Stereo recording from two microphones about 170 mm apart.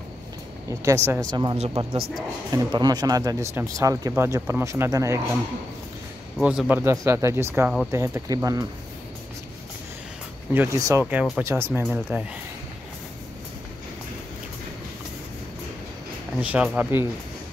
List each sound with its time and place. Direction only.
0.7 s speech: 20° right (ahead or behind)
6.3 s speech: centre (ahead or behind); by 8.6 s 20° right (ahead or behind)
10.5 s speech: 15° right (ahead or behind)
16.3 s speech: 5° right (ahead or behind)